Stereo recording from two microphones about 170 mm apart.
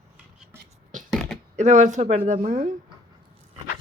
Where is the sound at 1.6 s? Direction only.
45° right (ahead or behind).